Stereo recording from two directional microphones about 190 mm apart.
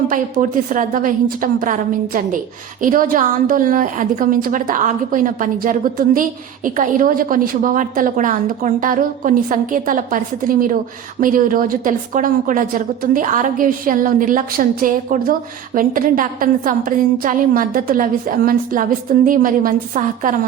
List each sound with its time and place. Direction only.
0.1 s a woman's voice: 45° right (ahead or behind)